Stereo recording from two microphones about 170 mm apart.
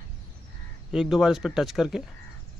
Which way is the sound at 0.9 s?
5° right (ahead or behind).